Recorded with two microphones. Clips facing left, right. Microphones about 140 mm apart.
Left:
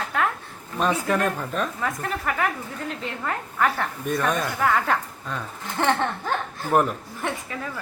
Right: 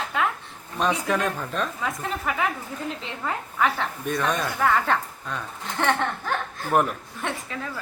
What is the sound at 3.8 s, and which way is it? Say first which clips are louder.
A woman's voice: left 1 dB; 5° left (ahead or behind).